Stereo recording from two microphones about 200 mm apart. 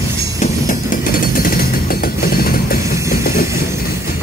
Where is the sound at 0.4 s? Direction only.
40° left (ahead or behind).